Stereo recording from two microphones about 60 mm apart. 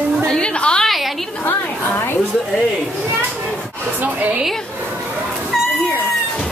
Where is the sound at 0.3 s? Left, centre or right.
Centre.